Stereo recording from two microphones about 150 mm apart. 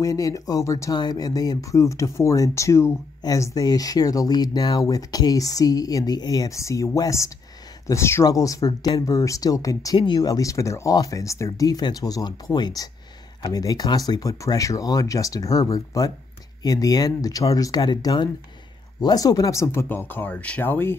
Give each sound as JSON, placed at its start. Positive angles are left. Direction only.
{"t": 0.0, "sound": "speech", "side_deg": 25}